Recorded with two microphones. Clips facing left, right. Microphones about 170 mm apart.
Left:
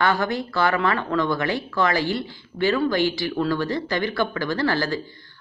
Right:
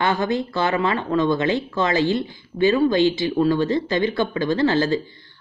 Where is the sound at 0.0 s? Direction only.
20° right (ahead or behind).